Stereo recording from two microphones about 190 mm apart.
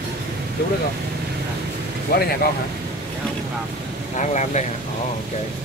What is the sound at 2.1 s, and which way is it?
Speech, 55° left (ahead or behind).